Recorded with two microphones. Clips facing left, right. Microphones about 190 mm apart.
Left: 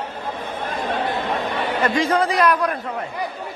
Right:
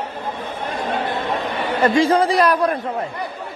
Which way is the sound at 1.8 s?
30° right (ahead or behind).